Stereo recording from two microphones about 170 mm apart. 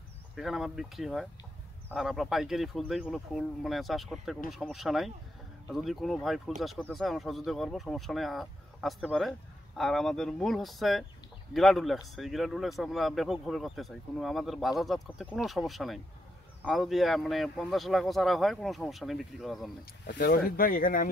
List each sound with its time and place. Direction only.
0.4 s speech: centre (ahead or behind)
20.1 s speech: 65° left (ahead or behind)